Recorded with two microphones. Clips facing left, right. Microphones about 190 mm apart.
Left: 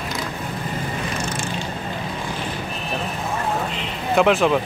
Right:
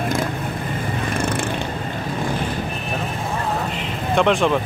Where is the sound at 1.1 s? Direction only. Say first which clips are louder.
Right 5 dB; 55° right (ahead or behind).